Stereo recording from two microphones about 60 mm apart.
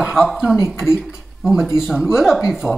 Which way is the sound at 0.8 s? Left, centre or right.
Centre.